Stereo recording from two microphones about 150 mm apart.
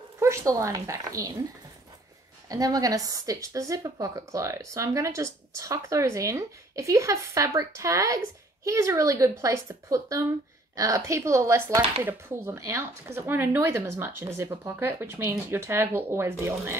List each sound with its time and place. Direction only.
0.2 s a woman's voice: 20° right (ahead or behind)
2.5 s a woman's voice: 25° right (ahead or behind)